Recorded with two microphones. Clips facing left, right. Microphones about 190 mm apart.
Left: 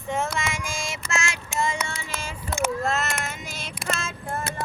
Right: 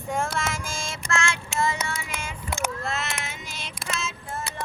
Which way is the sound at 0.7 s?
15° left (ahead or behind).